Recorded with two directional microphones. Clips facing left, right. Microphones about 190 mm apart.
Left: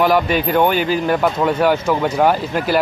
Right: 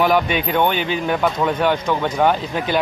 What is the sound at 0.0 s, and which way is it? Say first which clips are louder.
Speech: left 2 dB; 5° left (ahead or behind).